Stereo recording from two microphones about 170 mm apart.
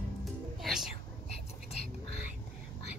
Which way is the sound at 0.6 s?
5° right (ahead or behind).